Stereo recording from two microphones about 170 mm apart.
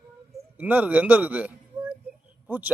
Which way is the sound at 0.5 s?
10° right (ahead or behind).